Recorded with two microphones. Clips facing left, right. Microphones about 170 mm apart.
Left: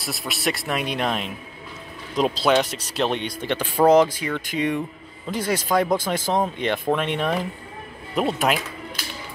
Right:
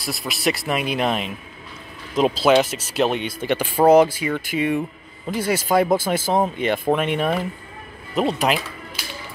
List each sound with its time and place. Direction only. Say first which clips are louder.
0.0 s speech: right 3 dB; centre (ahead or behind)